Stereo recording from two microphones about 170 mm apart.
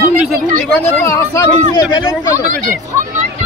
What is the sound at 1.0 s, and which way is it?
Speech, 15° left (ahead or behind).